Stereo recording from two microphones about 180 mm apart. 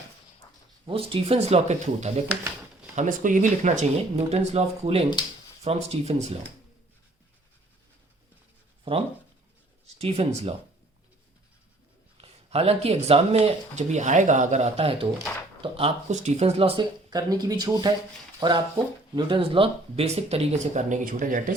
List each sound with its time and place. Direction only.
0.9 s speech: 30° right (ahead or behind)
8.8 s speech: 30° right (ahead or behind)
12.1 s speech: 35° right (ahead or behind)